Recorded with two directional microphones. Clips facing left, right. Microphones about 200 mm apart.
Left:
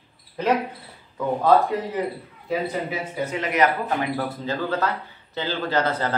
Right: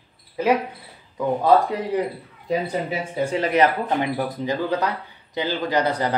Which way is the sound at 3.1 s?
30° right (ahead or behind).